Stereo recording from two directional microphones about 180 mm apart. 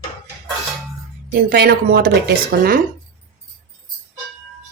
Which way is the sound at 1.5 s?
60° right (ahead or behind).